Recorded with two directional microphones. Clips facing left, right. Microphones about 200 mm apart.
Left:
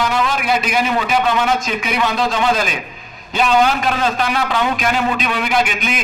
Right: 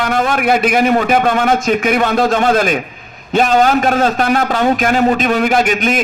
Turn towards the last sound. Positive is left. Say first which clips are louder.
# right 5 dB
turn(degrees=-45)  # may be behind; listen again after turning